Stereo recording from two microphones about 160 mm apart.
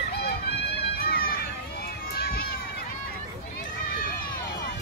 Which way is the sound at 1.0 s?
70° left (ahead or behind).